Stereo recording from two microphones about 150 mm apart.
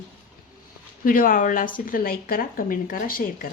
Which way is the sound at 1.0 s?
70° left (ahead or behind).